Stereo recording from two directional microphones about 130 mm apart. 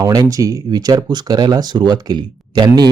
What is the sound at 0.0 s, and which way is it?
Speech, 30° right (ahead or behind).